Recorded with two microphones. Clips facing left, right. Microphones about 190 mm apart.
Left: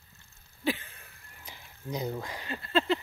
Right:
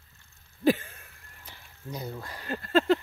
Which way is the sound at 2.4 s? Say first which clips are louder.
Right 5 dB; 45° right (ahead or behind).